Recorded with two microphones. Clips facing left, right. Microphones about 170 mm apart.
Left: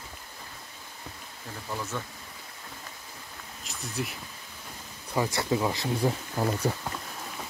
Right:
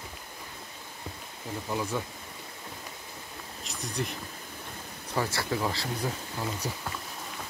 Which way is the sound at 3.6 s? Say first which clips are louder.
Even; centre (ahead or behind).